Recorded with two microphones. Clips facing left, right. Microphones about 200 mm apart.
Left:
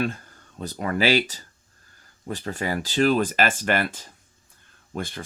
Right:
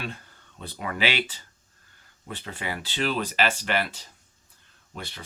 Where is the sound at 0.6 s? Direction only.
45° left (ahead or behind).